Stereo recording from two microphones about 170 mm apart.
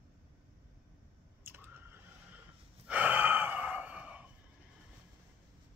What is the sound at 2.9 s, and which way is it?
Gasp, 10° right (ahead or behind).